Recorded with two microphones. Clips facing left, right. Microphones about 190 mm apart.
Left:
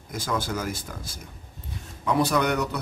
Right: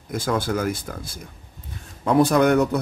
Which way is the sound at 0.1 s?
55° right (ahead or behind).